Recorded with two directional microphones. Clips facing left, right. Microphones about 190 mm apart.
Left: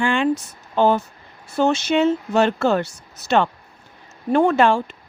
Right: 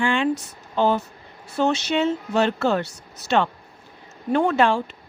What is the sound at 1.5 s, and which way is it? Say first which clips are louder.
Speech: left 3 dB; 50° left (ahead or behind).